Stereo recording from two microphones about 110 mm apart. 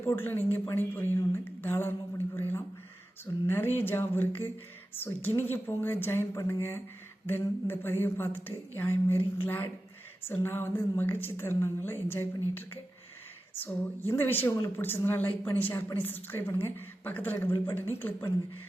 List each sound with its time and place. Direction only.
0.0 s speech: 20° left (ahead or behind)
13.5 s speech: 15° left (ahead or behind)